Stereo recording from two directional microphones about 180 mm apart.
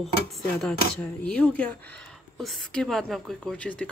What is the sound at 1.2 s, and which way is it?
Speech, 5° left (ahead or behind).